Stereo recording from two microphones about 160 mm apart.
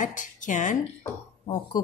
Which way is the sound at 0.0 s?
55° left (ahead or behind).